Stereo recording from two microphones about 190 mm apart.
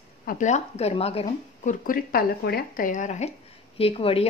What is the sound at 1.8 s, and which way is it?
A woman's voice, 50° left (ahead or behind).